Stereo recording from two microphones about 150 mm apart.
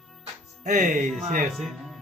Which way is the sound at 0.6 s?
55° right (ahead or behind).